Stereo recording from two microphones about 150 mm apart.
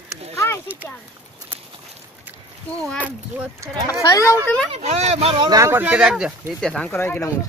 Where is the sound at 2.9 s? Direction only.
10° right (ahead or behind).